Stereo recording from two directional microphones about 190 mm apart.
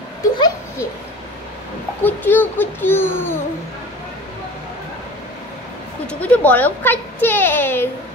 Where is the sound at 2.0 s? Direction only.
10° left (ahead or behind).